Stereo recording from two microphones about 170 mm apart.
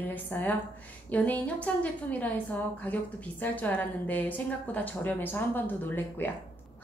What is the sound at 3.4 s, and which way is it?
A woman's voice, 10° left (ahead or behind).